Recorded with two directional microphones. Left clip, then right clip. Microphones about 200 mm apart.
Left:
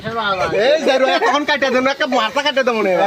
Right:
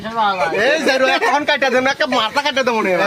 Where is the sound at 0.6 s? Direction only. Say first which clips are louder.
Left 1 dB; 35° right (ahead or behind).